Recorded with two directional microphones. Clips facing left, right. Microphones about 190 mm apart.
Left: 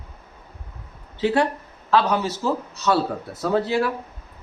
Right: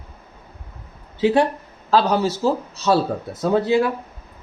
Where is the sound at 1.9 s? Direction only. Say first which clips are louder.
Right 2 dB; 30° right (ahead or behind).